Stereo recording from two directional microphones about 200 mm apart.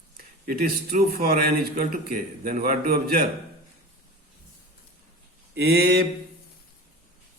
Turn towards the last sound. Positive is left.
turn(degrees=-55)  # may be behind; listen again after turning